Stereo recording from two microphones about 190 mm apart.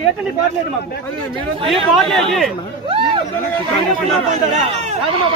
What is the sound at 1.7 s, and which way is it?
Speech, centre (ahead or behind).